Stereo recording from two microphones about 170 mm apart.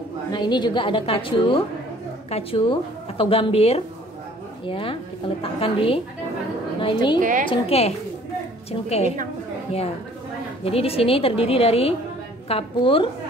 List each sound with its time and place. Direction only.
0.3 s a woman's voice: 25° left (ahead or behind)
7.2 s a woman's voice: 50° right (ahead or behind)
7.4 s speech: 35° left (ahead or behind)